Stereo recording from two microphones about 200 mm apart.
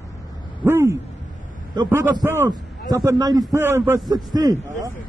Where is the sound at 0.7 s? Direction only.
10° right (ahead or behind).